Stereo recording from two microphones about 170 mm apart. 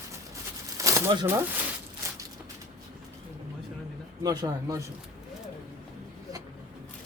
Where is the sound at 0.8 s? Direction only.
15° right (ahead or behind).